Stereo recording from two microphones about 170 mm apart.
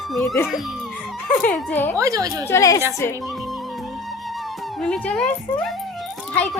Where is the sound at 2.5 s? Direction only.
20° left (ahead or behind).